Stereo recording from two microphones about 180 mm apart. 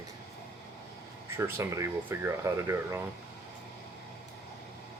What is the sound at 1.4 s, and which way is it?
Speech, 15° right (ahead or behind).